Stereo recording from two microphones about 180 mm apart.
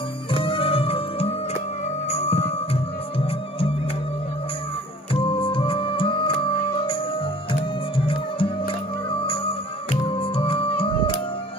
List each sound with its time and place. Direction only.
0.3 s music: 30° left (ahead or behind)
5.1 s music: 30° left (ahead or behind)
7.9 s music: 30° left (ahead or behind)
10.1 s music: 30° left (ahead or behind)